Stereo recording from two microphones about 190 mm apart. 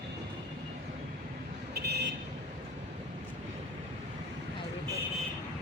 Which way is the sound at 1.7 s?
60° right (ahead or behind).